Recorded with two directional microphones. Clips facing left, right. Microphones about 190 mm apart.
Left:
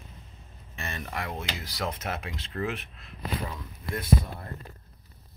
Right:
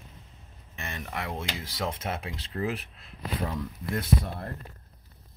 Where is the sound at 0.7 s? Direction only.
15° right (ahead or behind); by 3.1 s 35° right (ahead or behind).